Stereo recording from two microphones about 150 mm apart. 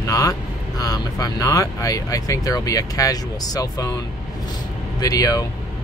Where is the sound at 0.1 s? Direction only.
25° left (ahead or behind).